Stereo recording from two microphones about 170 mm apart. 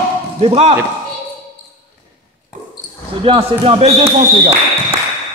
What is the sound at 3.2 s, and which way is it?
Speech, 30° right (ahead or behind).